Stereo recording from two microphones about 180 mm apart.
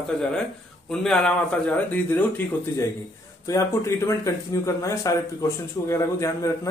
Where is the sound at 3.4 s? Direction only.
15° left (ahead or behind).